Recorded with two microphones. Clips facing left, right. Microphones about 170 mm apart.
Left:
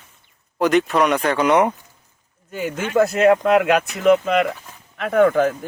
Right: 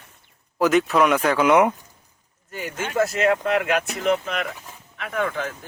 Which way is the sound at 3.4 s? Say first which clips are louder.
Left 6 dB; 60° left (ahead or behind).